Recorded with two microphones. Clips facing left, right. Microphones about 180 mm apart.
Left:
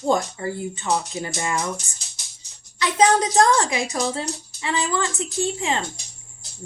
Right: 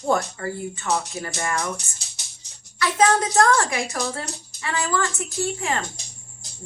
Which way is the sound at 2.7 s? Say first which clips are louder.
Left 1 dB; 20° left (ahead or behind).